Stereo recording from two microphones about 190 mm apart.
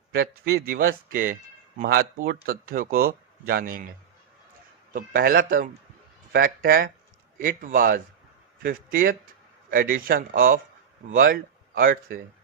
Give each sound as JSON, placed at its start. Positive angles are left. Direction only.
{"t": 0.1, "sound": "speech", "side_deg": -55}
{"t": 4.9, "sound": "speech", "side_deg": -50}